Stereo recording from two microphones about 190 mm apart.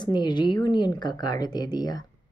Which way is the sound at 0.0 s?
25° left (ahead or behind).